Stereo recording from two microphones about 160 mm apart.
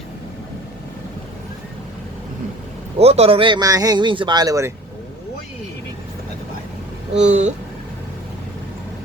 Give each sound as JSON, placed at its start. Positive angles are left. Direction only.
{"t": 3.0, "sound": "speech", "side_deg": -40}
{"t": 7.2, "sound": "speech", "side_deg": -45}